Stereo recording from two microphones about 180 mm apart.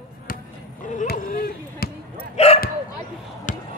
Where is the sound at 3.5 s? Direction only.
45° left (ahead or behind).